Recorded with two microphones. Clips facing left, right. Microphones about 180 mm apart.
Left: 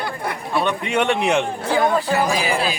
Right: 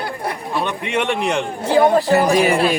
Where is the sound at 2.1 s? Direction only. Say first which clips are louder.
Right 5 dB; 65° right (ahead or behind).